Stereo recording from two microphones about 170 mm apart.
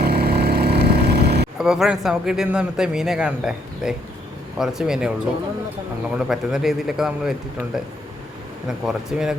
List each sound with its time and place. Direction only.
0.0 s vehicle: 70° right (ahead or behind)
1.5 s a man's voice: 5° right (ahead or behind)
6.1 s a man's voice: 5° right (ahead or behind)
8.6 s a man's voice: 5° right (ahead or behind)